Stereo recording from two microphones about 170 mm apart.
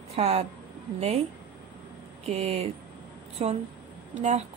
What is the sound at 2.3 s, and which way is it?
A woman's voice, 40° right (ahead or behind).